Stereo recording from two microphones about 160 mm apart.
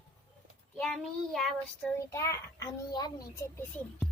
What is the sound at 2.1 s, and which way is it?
A child's voice, 20° left (ahead or behind).